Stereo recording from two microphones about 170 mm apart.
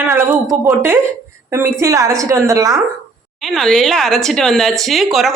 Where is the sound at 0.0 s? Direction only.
15° right (ahead or behind).